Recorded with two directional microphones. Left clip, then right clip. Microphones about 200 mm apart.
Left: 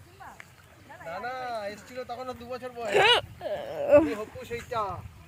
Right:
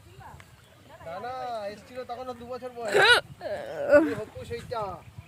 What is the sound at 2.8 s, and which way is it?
Speech, 5° right (ahead or behind).